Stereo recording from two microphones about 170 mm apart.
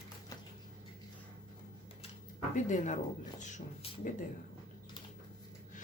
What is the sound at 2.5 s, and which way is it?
Speech, 45° left (ahead or behind).